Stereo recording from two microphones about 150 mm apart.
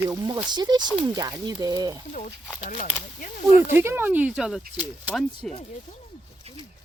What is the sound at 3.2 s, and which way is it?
Speech, 55° left (ahead or behind).